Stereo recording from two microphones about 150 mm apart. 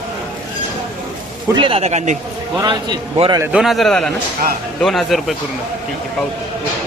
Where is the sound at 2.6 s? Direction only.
30° right (ahead or behind).